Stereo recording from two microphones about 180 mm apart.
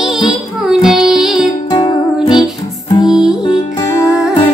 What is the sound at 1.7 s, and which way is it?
Music, 25° left (ahead or behind).